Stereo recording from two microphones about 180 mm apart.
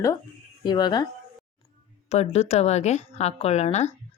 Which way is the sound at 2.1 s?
35° left (ahead or behind).